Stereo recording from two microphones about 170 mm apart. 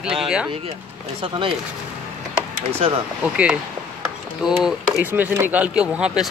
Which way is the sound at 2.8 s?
35° right (ahead or behind).